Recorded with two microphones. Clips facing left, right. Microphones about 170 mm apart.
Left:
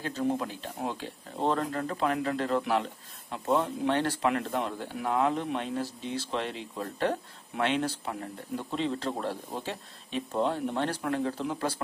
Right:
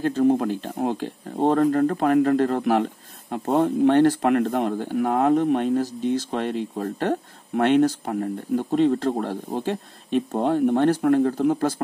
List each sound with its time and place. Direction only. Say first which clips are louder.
0.0 s speech: right 10 dB; 50° right (ahead or behind)